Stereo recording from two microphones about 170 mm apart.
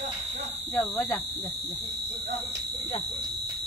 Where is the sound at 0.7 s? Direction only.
5° left (ahead or behind).